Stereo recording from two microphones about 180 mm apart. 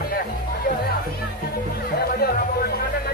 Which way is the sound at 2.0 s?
60° left (ahead or behind).